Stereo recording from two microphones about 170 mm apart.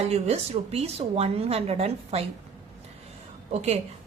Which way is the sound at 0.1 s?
35° right (ahead or behind).